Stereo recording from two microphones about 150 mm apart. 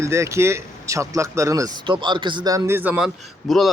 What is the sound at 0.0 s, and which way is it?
Speech, 20° right (ahead or behind).